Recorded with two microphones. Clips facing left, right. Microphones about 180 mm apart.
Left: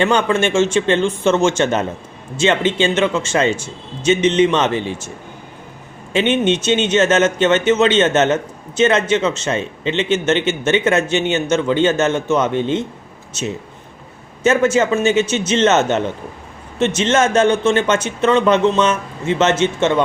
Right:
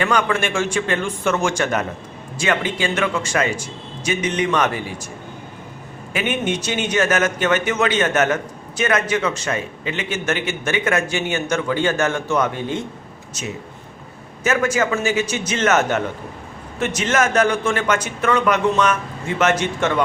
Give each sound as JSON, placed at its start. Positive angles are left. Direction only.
{"t": 0.0, "sound": "a man's voice", "side_deg": 25}
{"t": 6.1, "sound": "a man's voice", "side_deg": 25}